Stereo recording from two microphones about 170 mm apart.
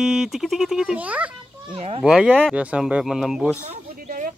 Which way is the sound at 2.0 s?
5° right (ahead or behind).